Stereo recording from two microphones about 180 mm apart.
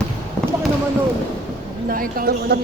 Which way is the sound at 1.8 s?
50° right (ahead or behind).